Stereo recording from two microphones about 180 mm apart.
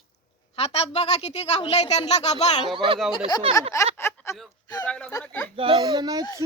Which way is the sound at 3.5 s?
30° right (ahead or behind).